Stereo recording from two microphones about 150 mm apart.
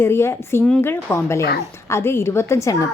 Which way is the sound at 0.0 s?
15° left (ahead or behind).